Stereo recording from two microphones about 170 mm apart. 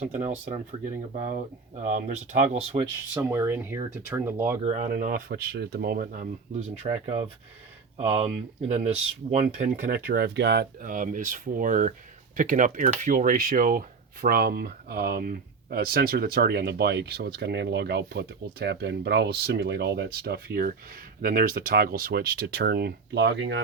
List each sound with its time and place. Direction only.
0.0 s speech: 45° right (ahead or behind)
3.2 s speech: 15° right (ahead or behind)
4.9 s speech: 55° right (ahead or behind)
6.8 s speech: 35° right (ahead or behind)
9.3 s speech: 45° right (ahead or behind); by 10.7 s 85° right
10.8 s speech: 50° right (ahead or behind); by 23.6 s 90° right